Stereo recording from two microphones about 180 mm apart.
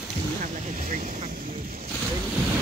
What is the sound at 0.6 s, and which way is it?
Vehicle, 45° right (ahead or behind).